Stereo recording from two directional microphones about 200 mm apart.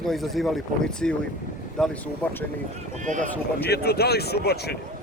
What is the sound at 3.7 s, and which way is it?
Speech, 50° left (ahead or behind).